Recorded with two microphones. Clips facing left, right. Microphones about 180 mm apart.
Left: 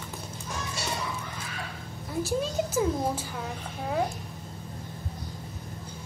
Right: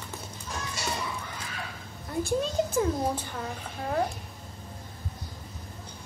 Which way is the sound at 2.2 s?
5° left (ahead or behind).